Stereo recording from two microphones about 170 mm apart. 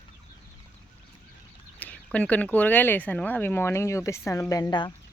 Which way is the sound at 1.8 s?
10° left (ahead or behind).